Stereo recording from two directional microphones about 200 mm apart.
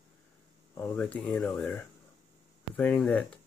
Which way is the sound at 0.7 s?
10° left (ahead or behind).